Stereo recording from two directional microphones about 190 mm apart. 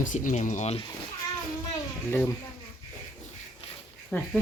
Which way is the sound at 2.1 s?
10° left (ahead or behind).